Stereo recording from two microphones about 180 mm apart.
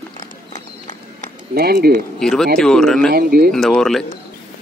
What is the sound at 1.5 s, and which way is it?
Speech, 60° right (ahead or behind).